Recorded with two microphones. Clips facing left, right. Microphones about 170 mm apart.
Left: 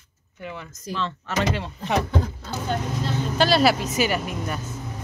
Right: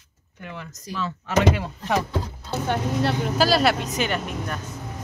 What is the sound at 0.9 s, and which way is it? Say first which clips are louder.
Speech: right 3 dB; 5° right (ahead or behind).